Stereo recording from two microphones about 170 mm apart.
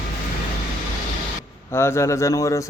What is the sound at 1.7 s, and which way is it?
Speech, 15° left (ahead or behind).